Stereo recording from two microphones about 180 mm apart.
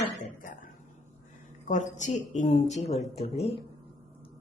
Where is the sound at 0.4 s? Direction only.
50° left (ahead or behind).